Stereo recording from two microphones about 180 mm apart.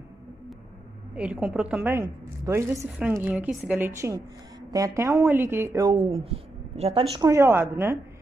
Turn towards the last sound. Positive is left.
turn(degrees=-15)  # may be behind; listen again after turning